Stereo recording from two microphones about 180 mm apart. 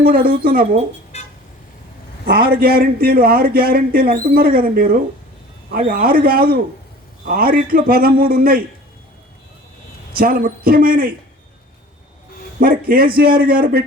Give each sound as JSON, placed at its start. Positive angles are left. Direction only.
{"t": 0.0, "sound": "a man's voice", "side_deg": -55}
{"t": 1.1, "sound": "vehicle", "side_deg": 35}
{"t": 2.2, "sound": "a man's voice", "side_deg": -60}
{"t": 10.2, "sound": "a man's voice", "side_deg": -55}
{"t": 12.5, "sound": "a man's voice", "side_deg": -55}